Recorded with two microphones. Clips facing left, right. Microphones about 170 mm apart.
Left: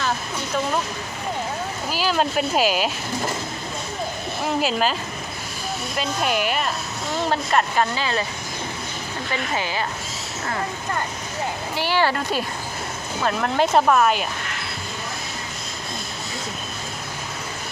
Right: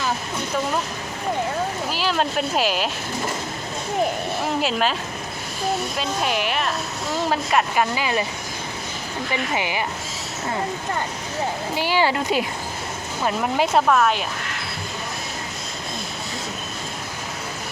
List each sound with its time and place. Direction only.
1.9 s speech: centre (ahead or behind)
4.6 s speech: centre (ahead or behind)
6.0 s speech: centre (ahead or behind); by 8.2 s 15° right (ahead or behind)
9.3 s speech: 15° right (ahead or behind)
11.7 s speech: 15° right (ahead or behind)
13.8 s speech: 5° left (ahead or behind)